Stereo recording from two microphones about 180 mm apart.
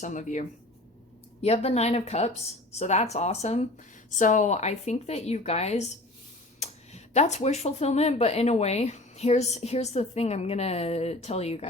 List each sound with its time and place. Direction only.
0.0 s speech: 45° left (ahead or behind)